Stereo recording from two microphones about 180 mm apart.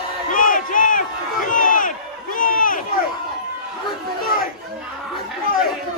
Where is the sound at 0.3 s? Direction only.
50° left (ahead or behind).